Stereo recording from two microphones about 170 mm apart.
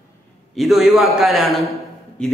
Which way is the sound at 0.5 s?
Centre (ahead or behind).